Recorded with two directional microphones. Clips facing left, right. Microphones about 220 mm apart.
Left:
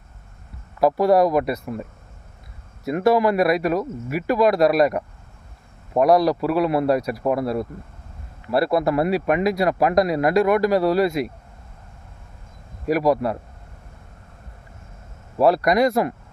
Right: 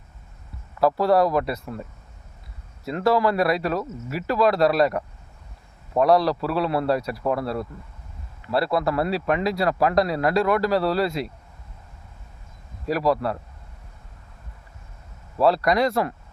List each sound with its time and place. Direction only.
0.8 s a man's voice: 15° left (ahead or behind)
2.8 s a man's voice: 20° left (ahead or behind)
12.9 s a man's voice: 15° left (ahead or behind)
15.4 s a man's voice: 20° left (ahead or behind)